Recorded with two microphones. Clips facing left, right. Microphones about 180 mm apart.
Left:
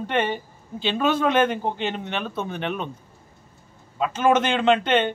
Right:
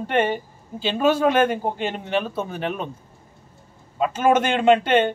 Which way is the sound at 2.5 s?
40° right (ahead or behind).